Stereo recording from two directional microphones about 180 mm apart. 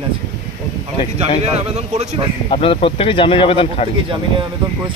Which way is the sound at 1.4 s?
35° right (ahead or behind).